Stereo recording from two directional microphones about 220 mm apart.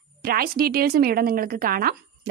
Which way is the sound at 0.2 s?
45° right (ahead or behind).